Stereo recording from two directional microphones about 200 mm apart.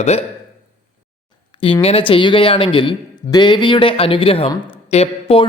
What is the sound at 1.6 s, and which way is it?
Speech, 25° left (ahead or behind).